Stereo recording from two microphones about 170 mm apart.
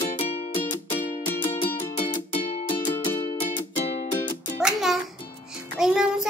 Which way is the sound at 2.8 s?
10° left (ahead or behind).